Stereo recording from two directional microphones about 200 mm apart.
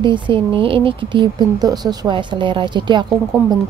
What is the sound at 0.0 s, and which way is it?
Speech, 25° right (ahead or behind).